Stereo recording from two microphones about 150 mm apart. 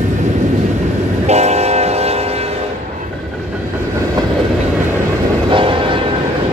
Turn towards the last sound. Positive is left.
turn(degrees=-35)  # may be behind; listen again after turning